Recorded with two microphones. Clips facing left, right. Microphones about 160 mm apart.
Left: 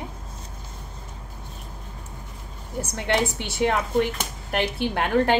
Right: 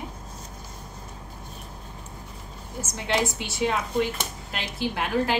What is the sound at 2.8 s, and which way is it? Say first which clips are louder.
Speech: left 2 dB; 60° left (ahead or behind).